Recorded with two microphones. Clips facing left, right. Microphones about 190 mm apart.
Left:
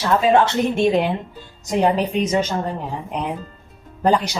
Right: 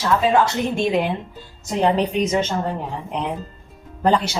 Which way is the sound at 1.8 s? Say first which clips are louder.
Even; 10° left (ahead or behind).